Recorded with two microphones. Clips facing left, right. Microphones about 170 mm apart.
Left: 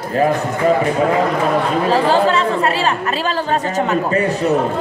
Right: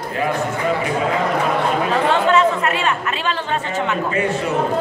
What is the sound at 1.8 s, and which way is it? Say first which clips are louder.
Chatter: left 5 dB; 35° left (ahead or behind).